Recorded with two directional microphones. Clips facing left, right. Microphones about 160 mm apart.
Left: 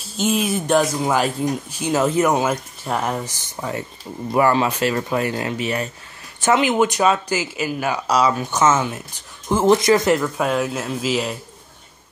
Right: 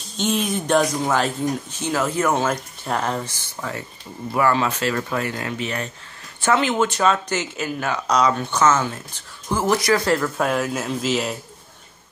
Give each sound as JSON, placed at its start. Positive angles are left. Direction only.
{"t": 0.0, "sound": "speech", "side_deg": 5}